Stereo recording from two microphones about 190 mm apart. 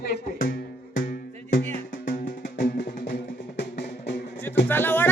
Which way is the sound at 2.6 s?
55° left (ahead or behind).